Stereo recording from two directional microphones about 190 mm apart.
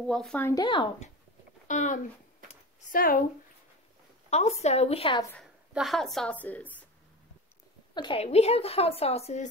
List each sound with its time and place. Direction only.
0.0 s a woman's voice: centre (ahead or behind)
1.7 s a woman's voice: 40° left (ahead or behind)
2.4 s a sound: 45° left (ahead or behind)
4.3 s a woman's voice: 35° left (ahead or behind)
5.7 s a woman's voice: centre (ahead or behind)
7.9 s a woman's voice: 25° left (ahead or behind)